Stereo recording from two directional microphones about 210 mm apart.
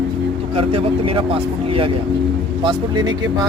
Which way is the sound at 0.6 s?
25° right (ahead or behind).